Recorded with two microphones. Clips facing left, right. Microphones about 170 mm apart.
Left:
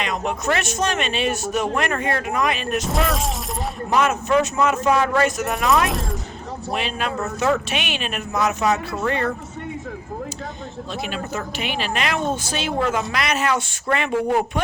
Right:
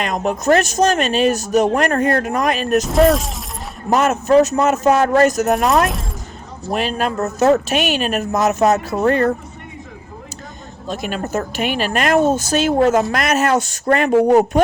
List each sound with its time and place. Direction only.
0.0 s speech: 45° right (ahead or behind)
3.1 s speech: centre (ahead or behind)
3.8 s speech: 45° right (ahead or behind)
10.8 s speech: 45° right (ahead or behind)